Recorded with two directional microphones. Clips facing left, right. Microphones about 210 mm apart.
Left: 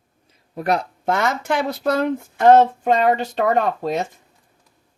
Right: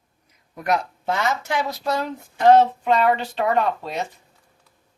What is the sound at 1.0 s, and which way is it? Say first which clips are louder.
Speech: left 3 dB; 55° left (ahead or behind).